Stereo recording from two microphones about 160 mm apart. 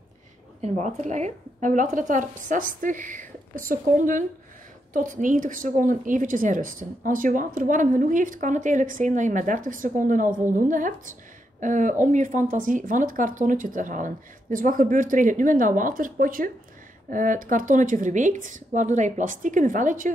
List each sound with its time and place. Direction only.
0.6 s a woman's voice: 45° right (ahead or behind)